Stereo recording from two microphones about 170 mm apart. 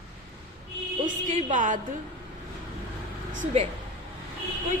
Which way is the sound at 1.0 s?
50° right (ahead or behind).